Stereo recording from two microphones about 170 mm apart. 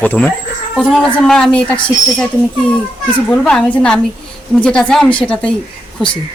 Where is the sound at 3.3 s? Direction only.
5° left (ahead or behind).